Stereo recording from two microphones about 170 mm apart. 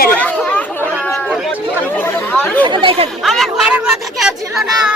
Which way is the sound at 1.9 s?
10° left (ahead or behind).